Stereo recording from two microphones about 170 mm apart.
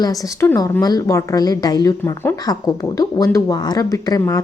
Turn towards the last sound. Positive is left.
turn(degrees=20)  # may be behind; listen again after turning